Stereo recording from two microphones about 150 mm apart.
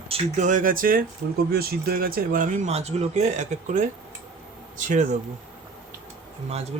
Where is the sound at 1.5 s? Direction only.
90° right; by 3.9 s 50° right (ahead or behind).